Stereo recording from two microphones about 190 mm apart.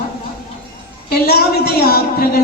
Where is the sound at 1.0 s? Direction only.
55° left (ahead or behind).